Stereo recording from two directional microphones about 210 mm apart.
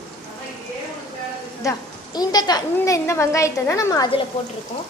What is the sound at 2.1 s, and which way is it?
A woman's voice, 20° left (ahead or behind).